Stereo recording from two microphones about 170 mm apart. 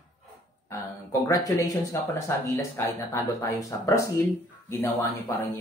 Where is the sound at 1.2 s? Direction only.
20° left (ahead or behind).